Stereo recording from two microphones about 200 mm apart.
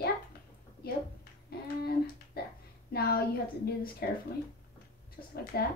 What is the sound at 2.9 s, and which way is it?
A woman's voice, 50° left (ahead or behind).